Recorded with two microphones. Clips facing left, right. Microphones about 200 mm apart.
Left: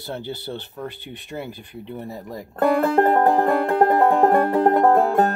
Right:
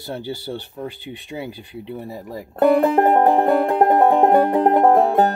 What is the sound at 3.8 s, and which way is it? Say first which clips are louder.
Speech: right 1 dB; 20° right (ahead or behind).